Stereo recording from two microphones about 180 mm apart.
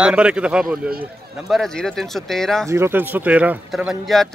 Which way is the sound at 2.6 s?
15° right (ahead or behind).